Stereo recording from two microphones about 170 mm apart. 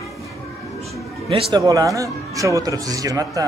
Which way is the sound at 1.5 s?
20° right (ahead or behind).